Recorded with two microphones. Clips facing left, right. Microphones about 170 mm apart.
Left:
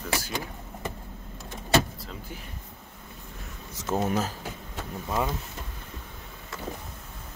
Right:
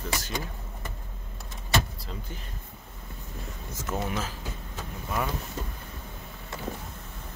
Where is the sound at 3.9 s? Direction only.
40° left (ahead or behind).